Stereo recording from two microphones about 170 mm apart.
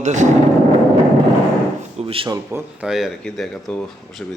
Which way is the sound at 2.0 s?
35° right (ahead or behind).